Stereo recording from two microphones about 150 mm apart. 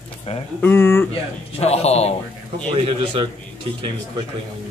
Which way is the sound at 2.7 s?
35° right (ahead or behind).